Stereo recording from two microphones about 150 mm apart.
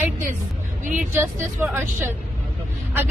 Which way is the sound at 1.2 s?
15° right (ahead or behind).